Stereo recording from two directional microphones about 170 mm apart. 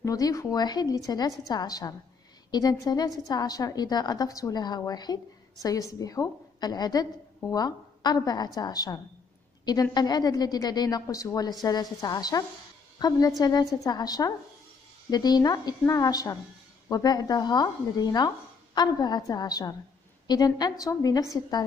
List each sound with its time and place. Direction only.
0.0 s a woman's voice: 20° left (ahead or behind)